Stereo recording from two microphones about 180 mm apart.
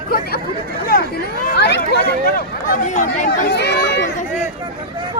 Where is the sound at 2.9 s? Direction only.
45° left (ahead or behind).